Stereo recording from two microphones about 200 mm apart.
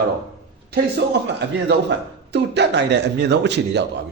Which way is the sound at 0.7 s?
60° right (ahead or behind).